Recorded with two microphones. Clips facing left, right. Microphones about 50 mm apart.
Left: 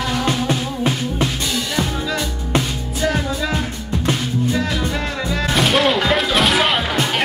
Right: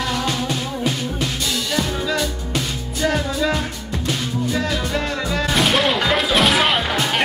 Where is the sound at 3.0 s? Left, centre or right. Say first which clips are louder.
Right 1 dB; centre.